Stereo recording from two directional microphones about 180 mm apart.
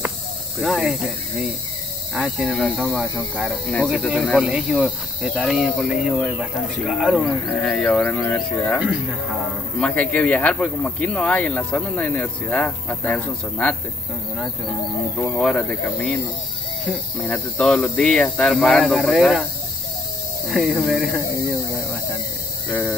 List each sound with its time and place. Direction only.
0.6 s speech: centre (ahead or behind)
15.1 s speech: 5° left (ahead or behind)
20.4 s speech: centre (ahead or behind)
22.7 s speech: 10° left (ahead or behind)